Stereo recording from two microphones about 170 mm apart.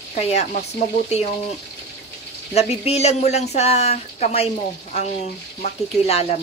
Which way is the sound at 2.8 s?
40° left (ahead or behind).